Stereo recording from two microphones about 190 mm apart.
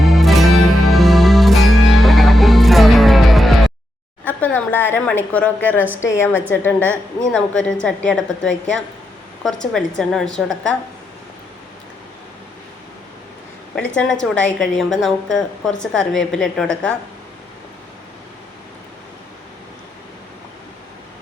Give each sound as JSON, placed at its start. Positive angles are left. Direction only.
{"t": 0.0, "sound": "music", "side_deg": 0}
{"t": 4.3, "sound": "a woman's voice", "side_deg": 10}
{"t": 13.7, "sound": "a woman's voice", "side_deg": 5}